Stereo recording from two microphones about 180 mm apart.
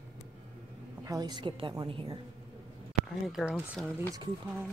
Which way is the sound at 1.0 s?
20° right (ahead or behind).